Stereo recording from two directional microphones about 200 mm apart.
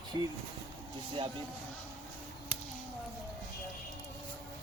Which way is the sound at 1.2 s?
25° right (ahead or behind).